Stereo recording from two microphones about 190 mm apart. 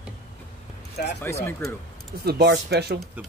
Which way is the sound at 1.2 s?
15° left (ahead or behind).